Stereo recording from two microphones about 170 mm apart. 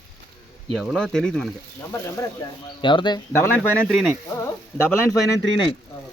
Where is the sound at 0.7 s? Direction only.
Centre (ahead or behind).